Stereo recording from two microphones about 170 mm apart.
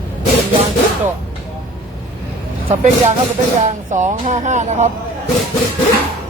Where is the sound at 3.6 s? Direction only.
45° right (ahead or behind).